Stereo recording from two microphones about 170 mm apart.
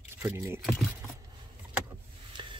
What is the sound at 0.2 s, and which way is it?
Speech, 15° right (ahead or behind).